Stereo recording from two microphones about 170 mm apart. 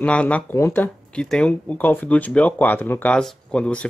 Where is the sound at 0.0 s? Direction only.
5° left (ahead or behind).